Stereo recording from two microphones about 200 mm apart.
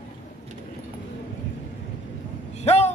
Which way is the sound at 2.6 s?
35° left (ahead or behind).